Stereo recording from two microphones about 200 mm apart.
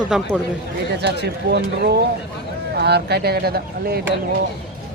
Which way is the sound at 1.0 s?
55° right (ahead or behind).